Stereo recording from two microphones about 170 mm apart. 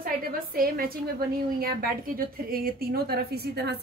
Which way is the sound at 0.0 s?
55° right (ahead or behind).